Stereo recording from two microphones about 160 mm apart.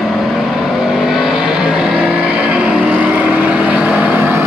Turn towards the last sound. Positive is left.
turn(degrees=-10)  # may be behind; listen again after turning